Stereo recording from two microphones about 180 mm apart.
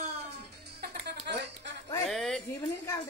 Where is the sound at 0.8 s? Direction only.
70° right (ahead or behind).